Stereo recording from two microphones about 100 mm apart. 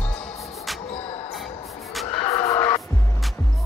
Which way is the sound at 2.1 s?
75° left (ahead or behind).